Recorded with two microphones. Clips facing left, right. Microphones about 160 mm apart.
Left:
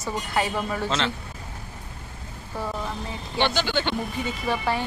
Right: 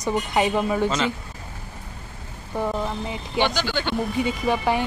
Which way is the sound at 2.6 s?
15° right (ahead or behind).